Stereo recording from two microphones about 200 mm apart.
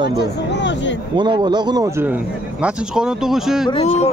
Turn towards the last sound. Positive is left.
turn(degrees=30)  # may be behind; listen again after turning